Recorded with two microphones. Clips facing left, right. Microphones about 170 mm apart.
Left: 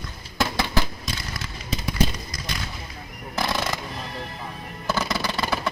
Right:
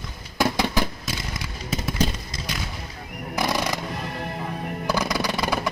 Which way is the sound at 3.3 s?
15° right (ahead or behind).